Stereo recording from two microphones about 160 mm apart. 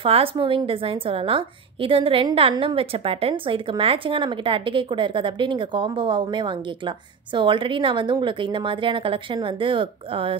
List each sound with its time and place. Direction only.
0.0 s a woman's voice: 35° right (ahead or behind)